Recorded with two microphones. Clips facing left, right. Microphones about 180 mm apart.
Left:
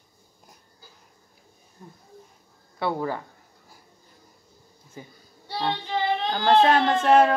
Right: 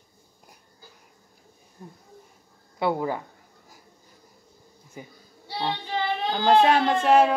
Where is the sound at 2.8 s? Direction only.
15° right (ahead or behind).